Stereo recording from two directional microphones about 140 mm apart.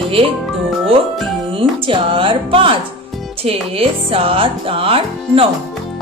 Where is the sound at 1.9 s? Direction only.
40° right (ahead or behind).